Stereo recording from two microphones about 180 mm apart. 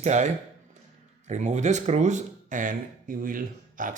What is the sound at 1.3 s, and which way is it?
Speech, 40° right (ahead or behind).